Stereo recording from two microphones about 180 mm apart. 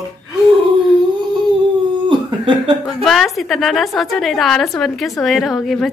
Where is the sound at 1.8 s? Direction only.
25° right (ahead or behind).